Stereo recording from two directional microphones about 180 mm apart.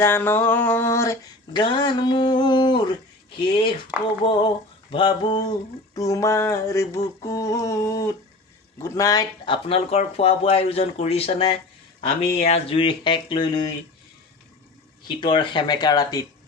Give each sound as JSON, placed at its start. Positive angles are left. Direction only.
{"t": 0.0, "sound": "a sound", "side_deg": 10}
{"t": 3.3, "sound": "speech", "side_deg": 25}
{"t": 4.2, "sound": "a sound", "side_deg": 30}
{"t": 8.8, "sound": "speech", "side_deg": 20}
{"t": 9.6, "sound": "speech", "side_deg": 35}
{"t": 15.0, "sound": "speech", "side_deg": 25}